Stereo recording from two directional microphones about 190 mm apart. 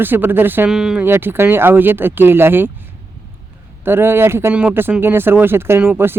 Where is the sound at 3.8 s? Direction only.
10° right (ahead or behind).